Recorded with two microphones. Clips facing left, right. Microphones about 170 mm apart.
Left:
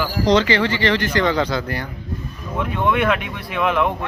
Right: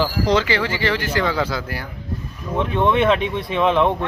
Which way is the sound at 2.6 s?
25° right (ahead or behind).